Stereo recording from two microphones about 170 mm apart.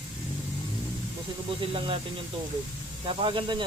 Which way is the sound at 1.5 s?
30° right (ahead or behind).